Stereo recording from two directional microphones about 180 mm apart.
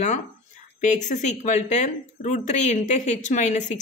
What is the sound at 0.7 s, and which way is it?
Speech, 40° left (ahead or behind).